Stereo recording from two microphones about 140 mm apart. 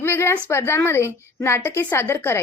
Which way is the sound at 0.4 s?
15° left (ahead or behind).